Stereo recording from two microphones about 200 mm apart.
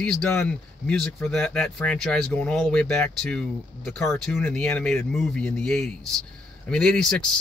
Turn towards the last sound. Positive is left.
turn(degrees=5)  # may be behind; listen again after turning